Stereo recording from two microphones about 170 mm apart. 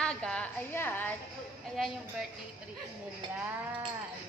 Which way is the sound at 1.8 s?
Centre (ahead or behind).